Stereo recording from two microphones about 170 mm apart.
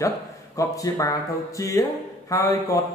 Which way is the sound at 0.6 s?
15° left (ahead or behind).